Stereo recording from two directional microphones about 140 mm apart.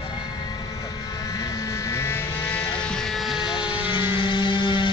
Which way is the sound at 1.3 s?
25° left (ahead or behind).